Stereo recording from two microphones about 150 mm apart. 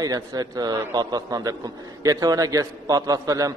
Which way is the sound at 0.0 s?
25° right (ahead or behind).